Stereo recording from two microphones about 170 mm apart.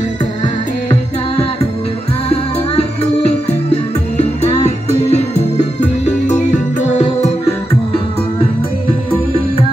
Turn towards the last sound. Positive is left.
turn(degrees=40)  # may be behind; listen again after turning